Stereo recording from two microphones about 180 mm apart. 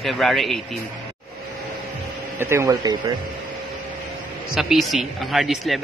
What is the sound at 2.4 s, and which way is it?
Speech, 15° right (ahead or behind).